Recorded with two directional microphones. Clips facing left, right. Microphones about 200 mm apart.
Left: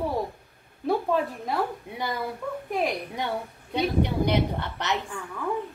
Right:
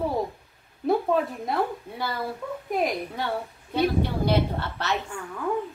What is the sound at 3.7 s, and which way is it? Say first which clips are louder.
A woman's voice: right 1 dB; 15° left (ahead or behind).